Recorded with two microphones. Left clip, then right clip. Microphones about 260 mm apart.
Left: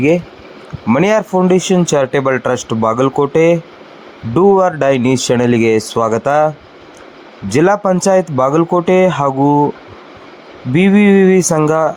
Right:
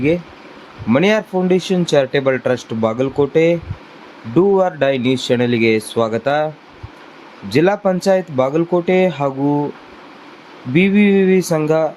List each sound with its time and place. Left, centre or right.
0.9 s speech: centre
7.5 s speech: centre
10.8 s speech: centre